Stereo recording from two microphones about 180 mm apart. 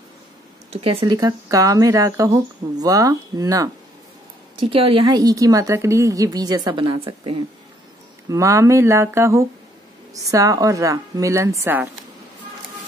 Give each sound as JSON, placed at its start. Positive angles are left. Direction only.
{"t": 0.7, "sound": "speech", "side_deg": -25}
{"t": 4.6, "sound": "a woman's voice", "side_deg": -30}